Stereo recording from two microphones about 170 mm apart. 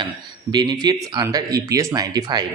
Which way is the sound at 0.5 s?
25° right (ahead or behind).